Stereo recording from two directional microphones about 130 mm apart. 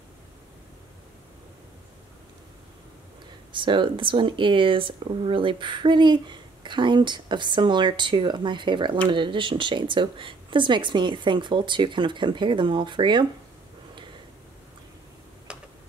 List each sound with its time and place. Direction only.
3.5 s speech: 40° right (ahead or behind)